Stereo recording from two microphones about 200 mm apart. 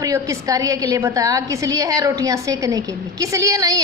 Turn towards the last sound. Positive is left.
turn(degrees=-15)  # may be behind; listen again after turning